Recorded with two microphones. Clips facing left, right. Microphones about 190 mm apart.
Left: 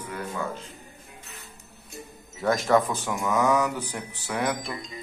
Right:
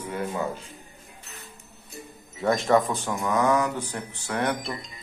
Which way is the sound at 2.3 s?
Centre (ahead or behind).